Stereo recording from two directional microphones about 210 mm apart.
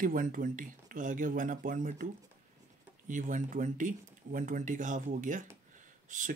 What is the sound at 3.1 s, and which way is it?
Speech, 35° right (ahead or behind).